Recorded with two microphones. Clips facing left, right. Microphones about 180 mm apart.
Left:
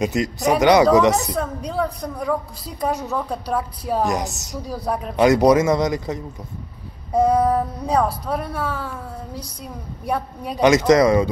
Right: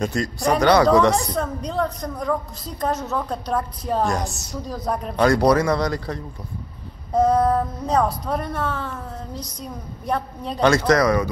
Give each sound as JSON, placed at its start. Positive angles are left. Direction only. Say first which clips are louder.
{"t": 0.0, "sound": "a woman's voice", "louder": "left 2 dB", "side_deg": 15}
{"t": 1.1, "sound": "a woman's voice", "louder": "even", "side_deg": 5}
{"t": 5.1, "sound": "a woman's voice", "louder": "left 3 dB", "side_deg": 20}